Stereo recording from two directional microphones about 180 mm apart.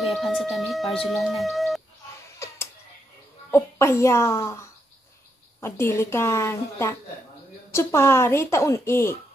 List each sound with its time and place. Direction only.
0.0 s speech: centre (ahead or behind)
2.3 s a sound: 15° left (ahead or behind)
3.5 s a woman's voice: 15° left (ahead or behind)